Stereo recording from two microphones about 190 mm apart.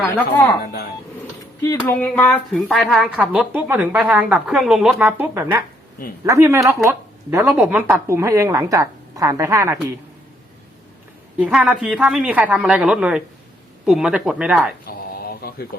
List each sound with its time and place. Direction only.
0.6 s speech: 55° left (ahead or behind)
1.6 s a woman's voice: 15° left (ahead or behind); by 9.7 s 15° right (ahead or behind)
11.3 s a woman's voice: 5° right (ahead or behind)
14.8 s mantra: 55° left (ahead or behind)